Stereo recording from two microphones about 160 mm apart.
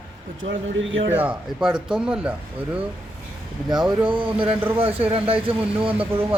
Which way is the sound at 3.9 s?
30° right (ahead or behind).